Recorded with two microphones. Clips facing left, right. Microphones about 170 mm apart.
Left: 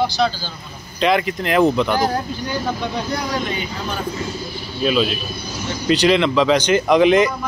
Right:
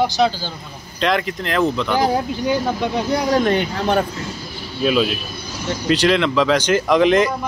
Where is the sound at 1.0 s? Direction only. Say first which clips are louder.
Left 2 dB; 5° left (ahead or behind).